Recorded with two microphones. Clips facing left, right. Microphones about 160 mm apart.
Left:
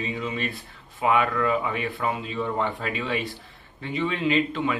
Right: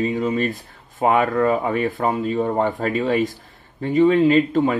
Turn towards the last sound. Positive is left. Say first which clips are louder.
# right 8 dB
turn(degrees=-45)  # may be behind; listen again after turning